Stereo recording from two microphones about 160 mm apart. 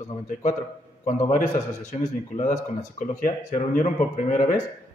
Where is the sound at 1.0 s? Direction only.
50° left (ahead or behind).